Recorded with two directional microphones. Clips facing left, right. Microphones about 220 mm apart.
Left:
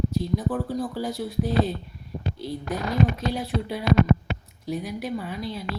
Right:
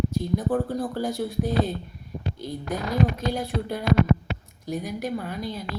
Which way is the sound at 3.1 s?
Centre (ahead or behind).